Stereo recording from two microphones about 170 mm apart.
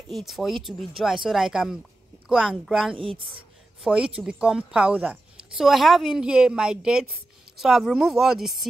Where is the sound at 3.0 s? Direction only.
30° right (ahead or behind).